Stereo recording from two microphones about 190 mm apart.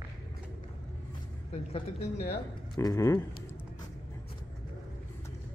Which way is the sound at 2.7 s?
20° left (ahead or behind).